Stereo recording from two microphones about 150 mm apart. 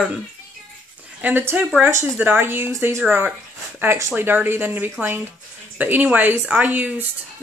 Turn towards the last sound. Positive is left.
turn(degrees=-10)  # may be behind; listen again after turning